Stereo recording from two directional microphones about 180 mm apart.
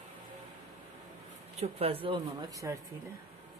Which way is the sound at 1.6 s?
30° right (ahead or behind).